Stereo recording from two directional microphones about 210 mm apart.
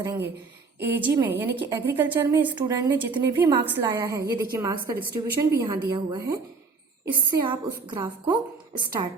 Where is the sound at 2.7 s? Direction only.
20° right (ahead or behind).